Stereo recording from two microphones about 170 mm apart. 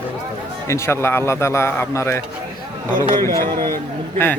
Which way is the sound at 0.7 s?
15° left (ahead or behind).